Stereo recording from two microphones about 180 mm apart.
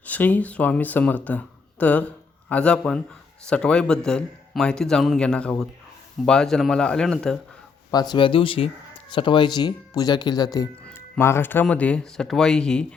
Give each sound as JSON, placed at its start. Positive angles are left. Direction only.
{"t": 0.0, "sound": "a man's voice", "side_deg": 10}
{"t": 7.9, "sound": "speech", "side_deg": 20}
{"t": 10.8, "sound": "a man's voice", "side_deg": 10}